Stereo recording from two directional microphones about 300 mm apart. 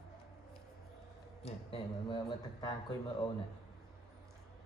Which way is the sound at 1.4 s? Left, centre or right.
Centre.